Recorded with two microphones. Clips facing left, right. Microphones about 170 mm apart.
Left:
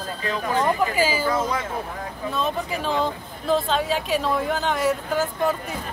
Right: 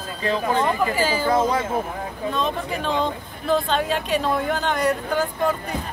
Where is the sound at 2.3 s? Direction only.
5° left (ahead or behind).